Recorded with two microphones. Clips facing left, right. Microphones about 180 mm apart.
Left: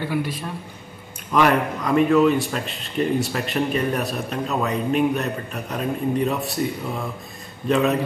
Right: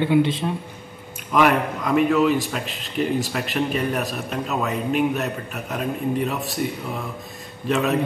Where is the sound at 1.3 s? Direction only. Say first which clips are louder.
Even; centre (ahead or behind).